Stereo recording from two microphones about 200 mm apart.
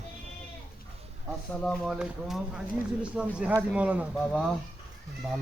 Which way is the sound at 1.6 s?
Centre (ahead or behind).